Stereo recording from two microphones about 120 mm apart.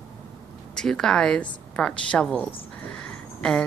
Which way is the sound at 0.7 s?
5° left (ahead or behind).